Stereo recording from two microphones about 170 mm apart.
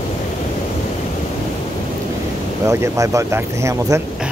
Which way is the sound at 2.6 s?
15° right (ahead or behind).